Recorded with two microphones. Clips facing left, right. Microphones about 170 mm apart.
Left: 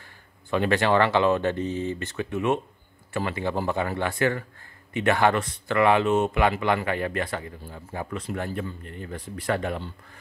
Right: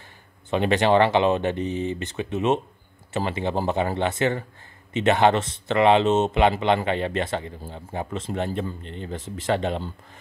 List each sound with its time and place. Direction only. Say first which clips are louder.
0.5 s speech: right 2 dB; 20° right (ahead or behind)